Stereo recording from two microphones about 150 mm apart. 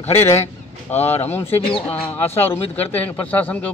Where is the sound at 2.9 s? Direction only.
10° left (ahead or behind).